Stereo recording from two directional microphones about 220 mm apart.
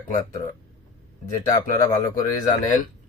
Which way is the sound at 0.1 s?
15° left (ahead or behind).